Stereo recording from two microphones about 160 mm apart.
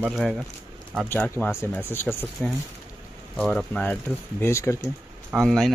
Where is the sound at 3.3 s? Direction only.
5° left (ahead or behind).